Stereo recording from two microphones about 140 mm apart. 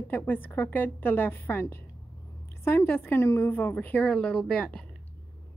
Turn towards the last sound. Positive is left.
turn(degrees=10)  # may be behind; listen again after turning